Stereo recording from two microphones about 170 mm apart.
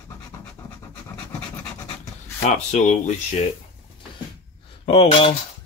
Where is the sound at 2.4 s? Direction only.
45° left (ahead or behind).